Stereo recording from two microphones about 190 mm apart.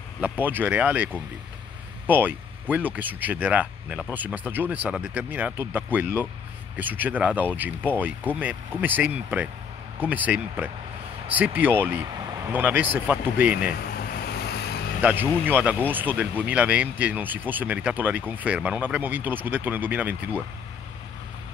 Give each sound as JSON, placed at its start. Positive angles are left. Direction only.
{"t": 0.2, "sound": "speech", "side_deg": -10}
{"t": 13.9, "sound": "vehicle", "side_deg": 60}
{"t": 15.0, "sound": "speech", "side_deg": -10}